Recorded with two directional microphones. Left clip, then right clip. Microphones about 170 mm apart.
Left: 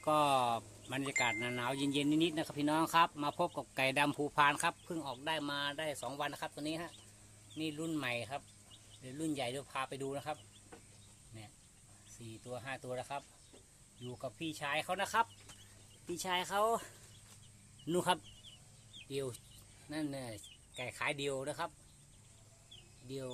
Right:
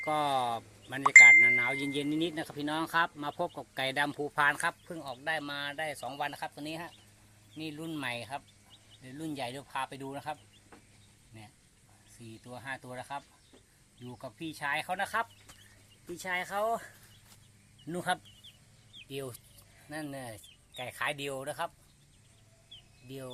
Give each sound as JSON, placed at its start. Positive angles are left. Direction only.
{"t": 0.0, "sound": "speech", "side_deg": 10}
{"t": 12.5, "sound": "speech", "side_deg": 10}
{"t": 17.8, "sound": "speech", "side_deg": 30}
{"t": 19.1, "sound": "speech", "side_deg": 5}
{"t": 23.0, "sound": "speech", "side_deg": 10}